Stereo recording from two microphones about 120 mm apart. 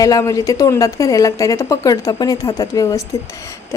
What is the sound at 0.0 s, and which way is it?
A woman's voice, 30° left (ahead or behind).